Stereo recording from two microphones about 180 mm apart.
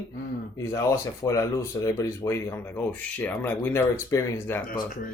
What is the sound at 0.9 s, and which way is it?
Speech, 15° left (ahead or behind).